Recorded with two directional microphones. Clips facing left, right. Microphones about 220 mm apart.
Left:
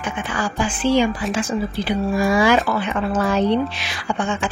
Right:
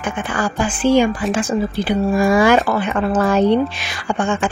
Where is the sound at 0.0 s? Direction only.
50° right (ahead or behind).